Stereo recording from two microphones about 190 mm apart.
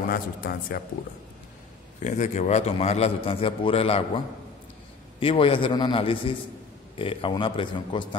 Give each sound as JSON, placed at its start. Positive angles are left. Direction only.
{"t": 0.1, "sound": "speech", "side_deg": 50}
{"t": 2.0, "sound": "a man's voice", "side_deg": 40}
{"t": 5.2, "sound": "a man's voice", "side_deg": 30}